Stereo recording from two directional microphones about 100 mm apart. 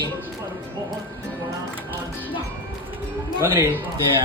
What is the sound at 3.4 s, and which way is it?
Speech, 20° right (ahead or behind).